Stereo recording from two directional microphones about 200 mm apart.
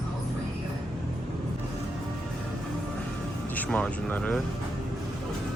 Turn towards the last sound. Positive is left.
turn(degrees=5)  # may be behind; listen again after turning